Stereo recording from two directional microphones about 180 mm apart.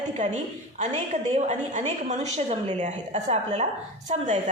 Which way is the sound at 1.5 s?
40° right (ahead or behind).